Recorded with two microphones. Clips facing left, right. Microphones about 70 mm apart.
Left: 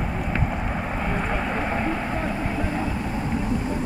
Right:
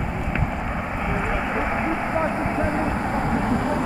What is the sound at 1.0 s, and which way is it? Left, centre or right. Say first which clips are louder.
Vehicle: right 2 dB; centre.